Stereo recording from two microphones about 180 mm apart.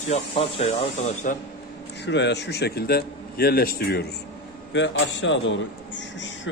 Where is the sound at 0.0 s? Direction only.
35° left (ahead or behind).